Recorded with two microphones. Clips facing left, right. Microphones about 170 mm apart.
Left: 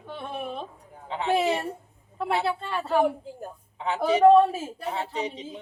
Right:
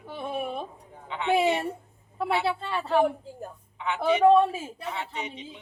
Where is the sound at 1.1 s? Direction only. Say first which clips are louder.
Even; 35° left (ahead or behind).